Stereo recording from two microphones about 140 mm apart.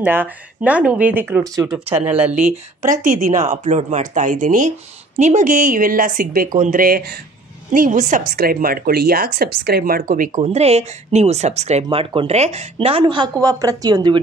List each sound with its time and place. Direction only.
0.0 s speech: 15° right (ahead or behind)
1.4 s speech: 25° right (ahead or behind)
2.0 s speech: 10° right (ahead or behind)
2.5 s speech: 65° right (ahead or behind)
8.4 s speech: 90° right
10.4 s speech: 50° right (ahead or behind); by 14.2 s 30° right (ahead or behind)